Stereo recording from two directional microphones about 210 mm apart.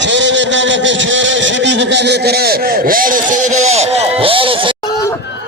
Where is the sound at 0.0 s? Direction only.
60° right (ahead or behind); by 4.8 s 25° right (ahead or behind).